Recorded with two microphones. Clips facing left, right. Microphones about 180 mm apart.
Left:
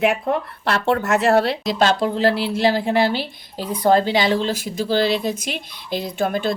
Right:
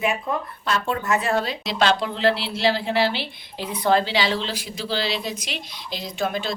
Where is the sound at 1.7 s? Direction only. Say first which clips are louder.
Left 3 dB; 45° left (ahead or behind).